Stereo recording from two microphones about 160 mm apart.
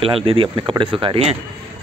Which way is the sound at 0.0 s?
35° right (ahead or behind).